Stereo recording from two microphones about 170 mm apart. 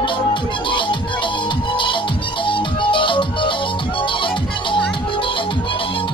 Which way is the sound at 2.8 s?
30° left (ahead or behind).